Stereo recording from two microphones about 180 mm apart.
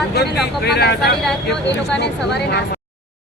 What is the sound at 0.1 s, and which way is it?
Speech, 60° left (ahead or behind).